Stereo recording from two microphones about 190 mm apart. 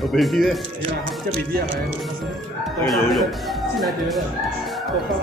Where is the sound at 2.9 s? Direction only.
Centre (ahead or behind).